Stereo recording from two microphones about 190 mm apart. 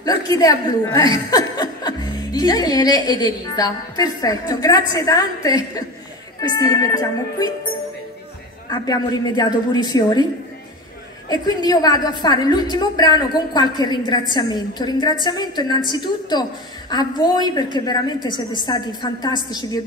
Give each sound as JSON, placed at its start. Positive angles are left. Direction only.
{"t": 0.0, "sound": "speech", "side_deg": 20}
{"t": 8.6, "sound": "speech", "side_deg": 20}
{"t": 11.2, "sound": "speech", "side_deg": 20}